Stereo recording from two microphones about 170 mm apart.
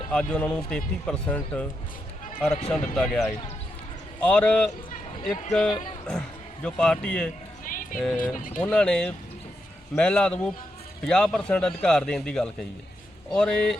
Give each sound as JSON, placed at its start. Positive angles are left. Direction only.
{"t": 0.1, "sound": "speech", "side_deg": 5}
{"t": 6.1, "sound": "a man's voice", "side_deg": 5}
{"t": 7.6, "sound": "a sound", "side_deg": 50}
{"t": 7.9, "sound": "speech", "side_deg": 5}
{"t": 8.4, "sound": "speech", "side_deg": 50}
{"t": 8.6, "sound": "speech", "side_deg": 5}